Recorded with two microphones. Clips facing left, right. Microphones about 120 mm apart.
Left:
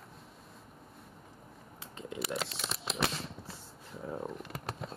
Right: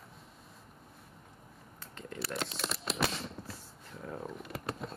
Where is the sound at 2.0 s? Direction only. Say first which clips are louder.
Left 2 dB; centre (ahead or behind).